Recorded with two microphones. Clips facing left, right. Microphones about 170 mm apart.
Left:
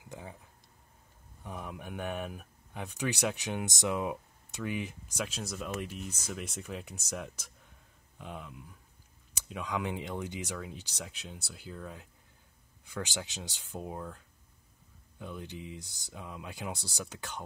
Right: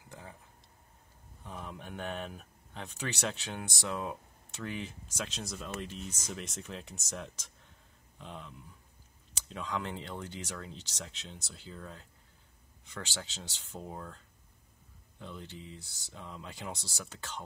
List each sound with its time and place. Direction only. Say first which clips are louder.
0.1 s tick-tock: left 4 dB; 15° left (ahead or behind)
1.4 s speech: left 2 dB; 10° left (ahead or behind)